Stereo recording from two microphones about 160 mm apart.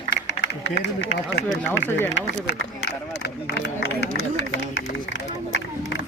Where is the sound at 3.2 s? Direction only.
90° left.